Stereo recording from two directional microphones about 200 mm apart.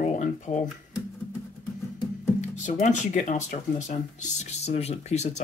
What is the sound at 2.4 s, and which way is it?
Speech, 35° left (ahead or behind).